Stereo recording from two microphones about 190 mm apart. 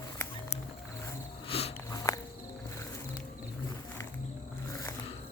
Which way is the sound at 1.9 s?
20° left (ahead or behind).